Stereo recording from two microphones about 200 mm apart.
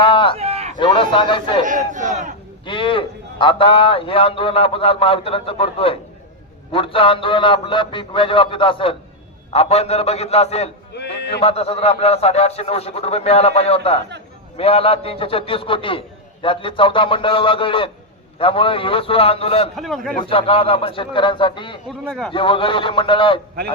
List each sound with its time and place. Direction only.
0.0 s a sound: 25° left (ahead or behind)
0.3 s a sound: 30° right (ahead or behind)
0.8 s a man's voice: 25° left (ahead or behind)
1.6 s crowd: 40° right (ahead or behind)
2.6 s a man's voice: 25° left (ahead or behind)
10.9 s a sound: 55° left (ahead or behind)
11.4 s a man's voice: 30° left (ahead or behind)
19.7 s a man's voice: centre (ahead or behind)
20.2 s a man's voice: 30° left (ahead or behind)
21.8 s a man's voice: 5° left (ahead or behind)
22.3 s a man's voice: 25° left (ahead or behind)